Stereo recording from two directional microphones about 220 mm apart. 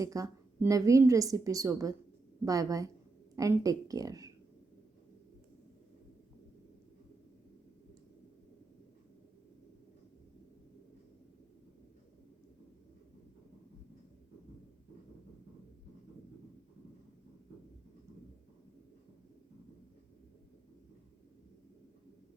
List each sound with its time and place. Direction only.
0.0 s a woman's voice: 15° right (ahead or behind)